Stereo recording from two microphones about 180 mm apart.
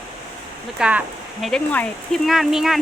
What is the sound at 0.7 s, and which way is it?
Speech, 5° right (ahead or behind).